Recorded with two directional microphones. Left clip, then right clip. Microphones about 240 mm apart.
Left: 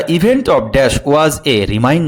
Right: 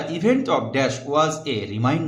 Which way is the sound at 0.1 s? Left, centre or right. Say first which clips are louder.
Left 8 dB; left.